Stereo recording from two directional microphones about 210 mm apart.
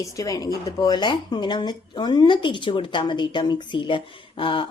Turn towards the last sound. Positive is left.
turn(degrees=25)  # may be behind; listen again after turning